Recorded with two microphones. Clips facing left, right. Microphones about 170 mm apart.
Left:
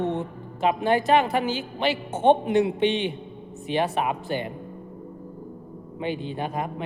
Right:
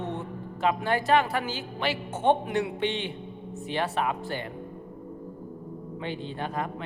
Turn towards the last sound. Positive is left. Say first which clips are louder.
# left 3 dB
turn(degrees=15)  # may be behind; listen again after turning